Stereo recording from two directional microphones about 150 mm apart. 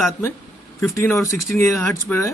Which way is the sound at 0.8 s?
15° left (ahead or behind).